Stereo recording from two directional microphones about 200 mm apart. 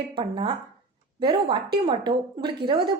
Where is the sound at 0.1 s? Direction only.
25° right (ahead or behind).